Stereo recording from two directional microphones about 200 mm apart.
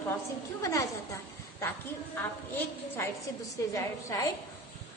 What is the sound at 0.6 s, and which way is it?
Speech, 15° left (ahead or behind).